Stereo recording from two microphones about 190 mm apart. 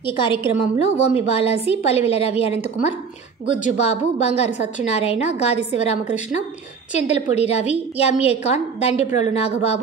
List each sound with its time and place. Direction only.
0.0 s a woman's voice: 25° left (ahead or behind)